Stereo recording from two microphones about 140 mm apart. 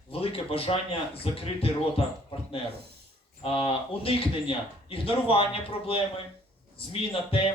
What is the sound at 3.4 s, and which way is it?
A man's voice, 40° left (ahead or behind).